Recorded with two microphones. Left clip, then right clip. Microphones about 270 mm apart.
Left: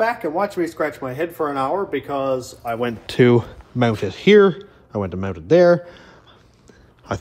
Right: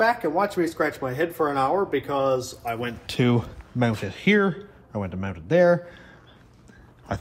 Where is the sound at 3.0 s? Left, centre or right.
Left.